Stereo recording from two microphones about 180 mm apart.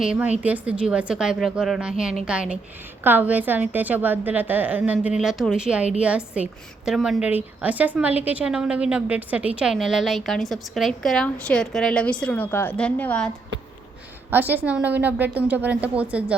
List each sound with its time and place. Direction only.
0.0 s a woman's voice: 5° right (ahead or behind)
14.3 s a woman's voice: 10° right (ahead or behind)